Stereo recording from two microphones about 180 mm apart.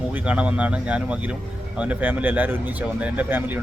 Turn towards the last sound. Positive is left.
turn(degrees=-10)  # may be behind; listen again after turning